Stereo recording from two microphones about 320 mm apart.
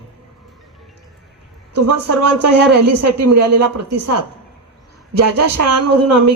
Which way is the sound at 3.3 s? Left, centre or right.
Right.